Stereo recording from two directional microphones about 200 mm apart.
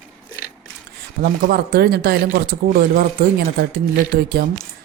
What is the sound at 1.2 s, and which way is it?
Speech, 50° right (ahead or behind).